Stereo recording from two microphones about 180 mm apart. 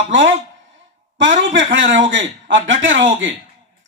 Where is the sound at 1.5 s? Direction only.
90° right.